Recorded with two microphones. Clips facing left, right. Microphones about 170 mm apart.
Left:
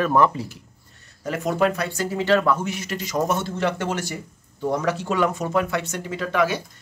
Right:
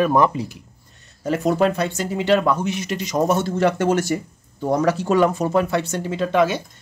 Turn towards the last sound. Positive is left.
turn(degrees=-25)  # may be behind; listen again after turning